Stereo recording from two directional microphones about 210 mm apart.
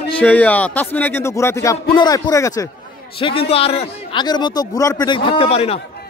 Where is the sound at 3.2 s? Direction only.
25° left (ahead or behind).